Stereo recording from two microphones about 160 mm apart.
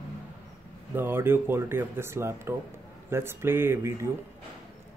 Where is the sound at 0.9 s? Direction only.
15° right (ahead or behind).